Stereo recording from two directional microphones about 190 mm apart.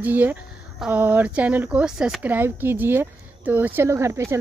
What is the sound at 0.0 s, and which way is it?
Speech, 10° right (ahead or behind).